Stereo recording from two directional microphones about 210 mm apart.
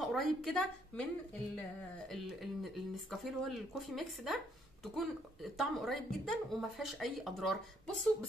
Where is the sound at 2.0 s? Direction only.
Centre (ahead or behind).